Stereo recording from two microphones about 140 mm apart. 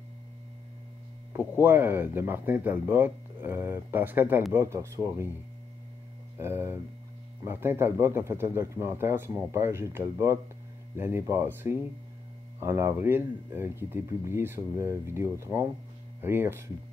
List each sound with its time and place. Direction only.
1.3 s speech: 15° right (ahead or behind)
6.3 s speech: 15° right (ahead or behind)